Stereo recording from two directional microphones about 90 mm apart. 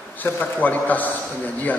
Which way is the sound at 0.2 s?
20° left (ahead or behind).